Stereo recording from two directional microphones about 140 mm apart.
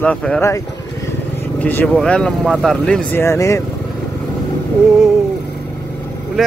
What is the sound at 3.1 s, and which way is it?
Speech, 20° left (ahead or behind).